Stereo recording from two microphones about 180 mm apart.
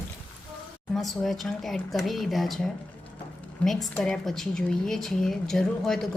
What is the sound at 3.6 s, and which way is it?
A woman's voice, centre (ahead or behind).